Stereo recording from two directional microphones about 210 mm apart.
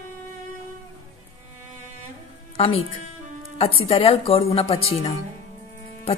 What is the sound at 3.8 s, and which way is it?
A woman's voice, 30° left (ahead or behind).